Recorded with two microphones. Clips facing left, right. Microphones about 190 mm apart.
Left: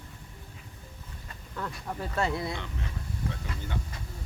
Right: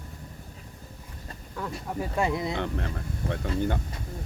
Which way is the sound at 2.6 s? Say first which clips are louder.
Right 8 dB; 60° right (ahead or behind).